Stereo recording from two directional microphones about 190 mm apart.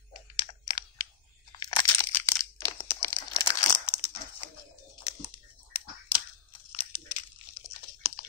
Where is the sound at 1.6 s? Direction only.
25° left (ahead or behind).